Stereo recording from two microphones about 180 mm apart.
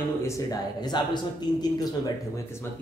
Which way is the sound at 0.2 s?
20° left (ahead or behind).